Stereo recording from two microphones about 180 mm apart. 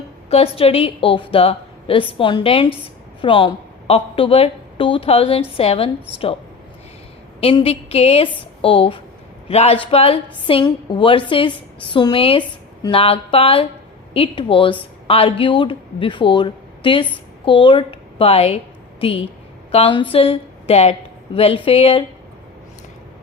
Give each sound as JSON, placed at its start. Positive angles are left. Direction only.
{"t": 0.3, "sound": "a woman's voice", "side_deg": 35}
{"t": 7.4, "sound": "a woman's voice", "side_deg": 30}